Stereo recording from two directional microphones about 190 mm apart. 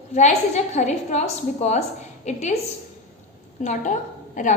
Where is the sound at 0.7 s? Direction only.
35° left (ahead or behind).